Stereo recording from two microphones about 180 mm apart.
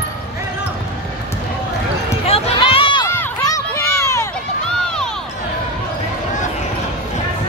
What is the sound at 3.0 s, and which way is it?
Run, 15° left (ahead or behind).